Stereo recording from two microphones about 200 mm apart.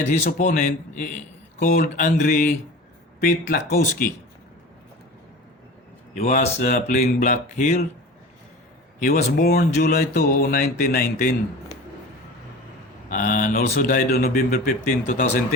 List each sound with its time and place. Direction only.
0.0 s speech: 40° left (ahead or behind)
6.1 s speech: 35° left (ahead or behind)
9.0 s speech: 40° left (ahead or behind)
13.1 s speech: 40° left (ahead or behind)